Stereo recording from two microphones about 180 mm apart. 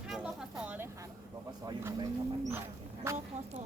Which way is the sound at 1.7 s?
20° right (ahead or behind).